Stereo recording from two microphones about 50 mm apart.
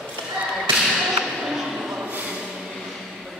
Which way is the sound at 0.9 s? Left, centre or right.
Centre.